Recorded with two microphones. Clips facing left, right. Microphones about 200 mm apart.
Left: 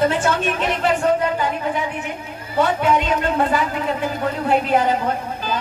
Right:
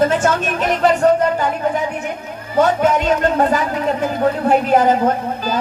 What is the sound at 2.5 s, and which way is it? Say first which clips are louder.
Speech: right 3 dB; 45° right (ahead or behind).